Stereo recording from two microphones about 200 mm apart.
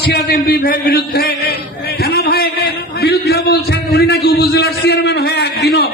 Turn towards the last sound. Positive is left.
turn(degrees=55)  # may be behind; listen again after turning